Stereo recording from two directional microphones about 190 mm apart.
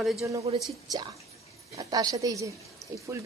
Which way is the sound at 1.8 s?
20° right (ahead or behind).